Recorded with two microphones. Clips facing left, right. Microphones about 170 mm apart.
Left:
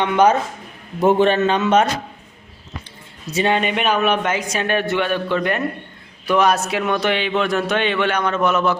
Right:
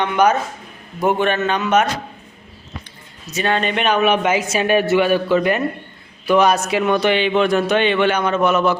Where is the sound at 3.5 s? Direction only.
10° left (ahead or behind).